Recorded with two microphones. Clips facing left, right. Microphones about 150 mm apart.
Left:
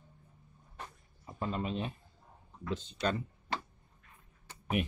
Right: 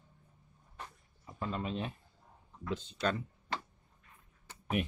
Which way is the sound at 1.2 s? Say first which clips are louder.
Left 2 dB; 25° left (ahead or behind).